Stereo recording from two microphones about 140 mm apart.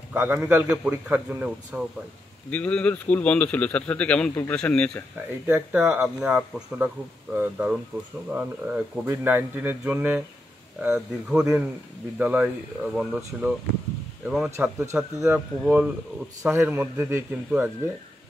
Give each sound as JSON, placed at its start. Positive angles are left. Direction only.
{"t": 0.1, "sound": "a man's voice", "side_deg": -15}
{"t": 2.5, "sound": "speech", "side_deg": 10}
{"t": 5.5, "sound": "a man's voice", "side_deg": -10}
{"t": 14.6, "sound": "a man's voice", "side_deg": -15}
{"t": 16.4, "sound": "a man's voice", "side_deg": -15}